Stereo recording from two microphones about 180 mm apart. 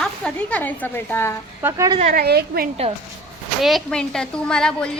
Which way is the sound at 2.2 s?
60° right (ahead or behind).